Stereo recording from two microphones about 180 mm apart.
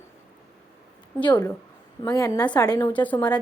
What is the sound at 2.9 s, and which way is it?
Speech, 10° left (ahead or behind).